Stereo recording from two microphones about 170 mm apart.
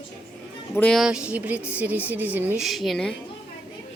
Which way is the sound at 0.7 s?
5° left (ahead or behind).